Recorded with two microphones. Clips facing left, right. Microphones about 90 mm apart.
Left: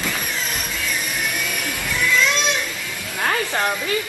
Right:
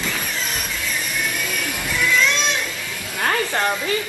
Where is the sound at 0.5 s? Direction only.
20° left (ahead or behind).